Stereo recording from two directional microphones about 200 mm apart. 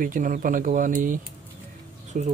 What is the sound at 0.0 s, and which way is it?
Speech, 40° right (ahead or behind).